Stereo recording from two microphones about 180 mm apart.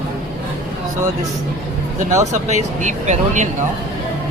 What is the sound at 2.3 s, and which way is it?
Speech, 40° right (ahead or behind).